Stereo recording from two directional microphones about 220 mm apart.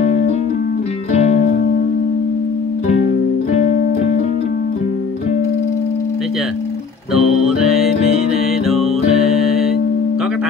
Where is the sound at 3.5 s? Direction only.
35° left (ahead or behind).